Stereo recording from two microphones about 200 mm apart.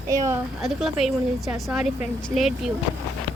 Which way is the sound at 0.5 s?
Centre (ahead or behind).